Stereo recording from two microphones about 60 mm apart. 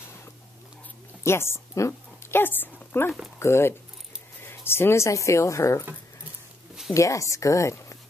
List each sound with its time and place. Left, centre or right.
1.2 s a woman's voice: left
2.3 s speech: left
3.3 s speech: left
6.9 s a woman's voice: left